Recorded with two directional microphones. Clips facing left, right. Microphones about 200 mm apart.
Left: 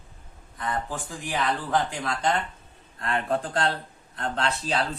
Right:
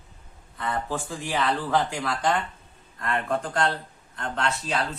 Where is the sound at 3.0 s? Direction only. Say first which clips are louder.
Even; 30° left (ahead or behind).